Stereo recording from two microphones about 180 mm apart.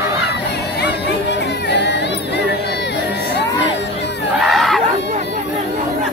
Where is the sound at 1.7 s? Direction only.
70° left (ahead or behind).